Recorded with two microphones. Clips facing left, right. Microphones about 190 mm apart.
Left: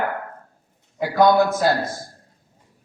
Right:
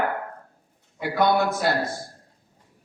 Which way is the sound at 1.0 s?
65° right (ahead or behind).